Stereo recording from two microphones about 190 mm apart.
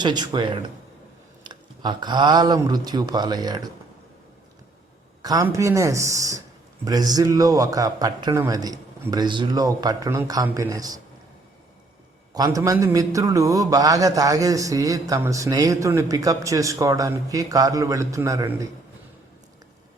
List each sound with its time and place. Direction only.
0.0 s a man's voice: 20° right (ahead or behind)
5.2 s a man's voice: 20° right (ahead or behind)
12.3 s a man's voice: 20° right (ahead or behind)